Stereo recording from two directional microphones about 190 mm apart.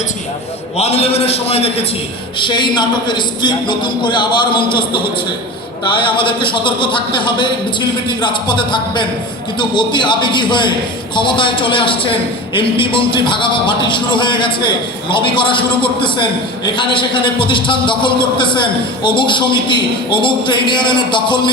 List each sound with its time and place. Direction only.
0.8 s a man's voice: 35° left (ahead or behind)